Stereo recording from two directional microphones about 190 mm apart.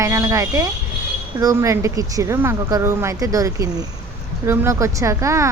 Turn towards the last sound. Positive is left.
turn(degrees=-15)  # may be behind; listen again after turning